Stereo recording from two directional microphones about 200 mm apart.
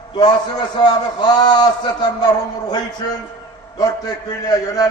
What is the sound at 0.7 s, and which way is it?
Speech, 20° left (ahead or behind).